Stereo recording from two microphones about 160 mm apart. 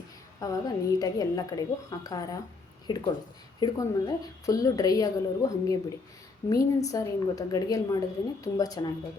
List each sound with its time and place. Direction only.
0.3 s a woman's voice: 20° left (ahead or behind)